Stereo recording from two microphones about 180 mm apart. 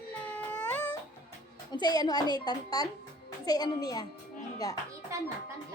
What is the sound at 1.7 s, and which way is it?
A woman's voice, 25° left (ahead or behind).